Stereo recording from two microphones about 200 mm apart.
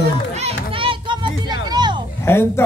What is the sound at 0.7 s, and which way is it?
Children playing, 25° right (ahead or behind).